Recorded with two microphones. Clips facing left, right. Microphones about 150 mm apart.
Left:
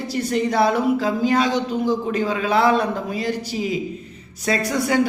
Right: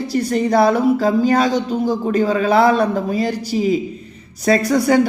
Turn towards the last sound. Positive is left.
turn(degrees=-40)  # may be behind; listen again after turning